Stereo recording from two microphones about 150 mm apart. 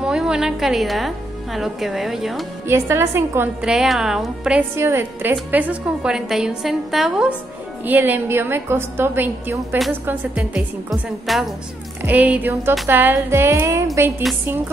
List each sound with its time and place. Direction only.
0.0 s a woman's voice: 5° right (ahead or behind)
2.7 s a woman's voice: 15° right (ahead or behind)
3.6 s a woman's voice: 5° right (ahead or behind)
4.7 s a woman's voice: 15° right (ahead or behind)
12.0 s a woman's voice: 10° right (ahead or behind)